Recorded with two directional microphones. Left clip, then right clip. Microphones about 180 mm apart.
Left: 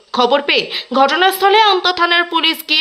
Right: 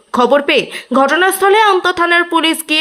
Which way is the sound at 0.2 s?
20° right (ahead or behind).